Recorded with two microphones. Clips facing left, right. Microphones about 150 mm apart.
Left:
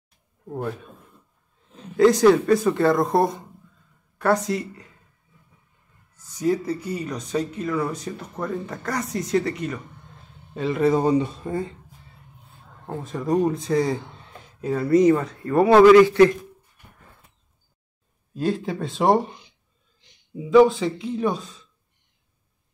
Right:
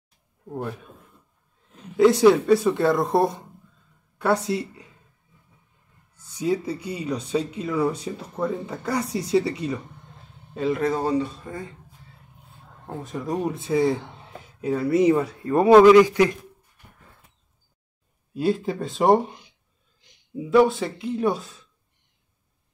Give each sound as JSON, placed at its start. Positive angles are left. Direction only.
{"t": 0.5, "sound": "speech", "side_deg": 0}
{"t": 2.0, "sound": "speech", "side_deg": -5}
{"t": 6.4, "sound": "speech", "side_deg": -25}
{"t": 6.7, "sound": "speech", "side_deg": -10}
{"t": 7.2, "sound": "speech", "side_deg": -30}
{"t": 7.5, "sound": "speech", "side_deg": -10}
{"t": 10.9, "sound": "speech", "side_deg": 15}
{"t": 11.4, "sound": "speech", "side_deg": 30}
{"t": 12.8, "sound": "speech", "side_deg": 0}
{"t": 18.3, "sound": "speech", "side_deg": -5}
{"t": 20.4, "sound": "speech", "side_deg": -5}